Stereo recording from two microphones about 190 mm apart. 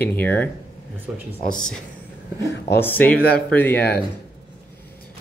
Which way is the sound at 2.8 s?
10° left (ahead or behind).